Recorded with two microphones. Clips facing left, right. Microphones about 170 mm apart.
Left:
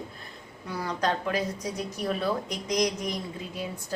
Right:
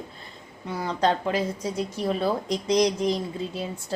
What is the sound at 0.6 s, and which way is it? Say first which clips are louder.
Speech: right 4 dB; 25° right (ahead or behind).